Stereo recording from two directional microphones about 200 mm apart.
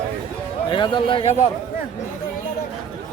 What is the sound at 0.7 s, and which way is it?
Speech, 25° left (ahead or behind).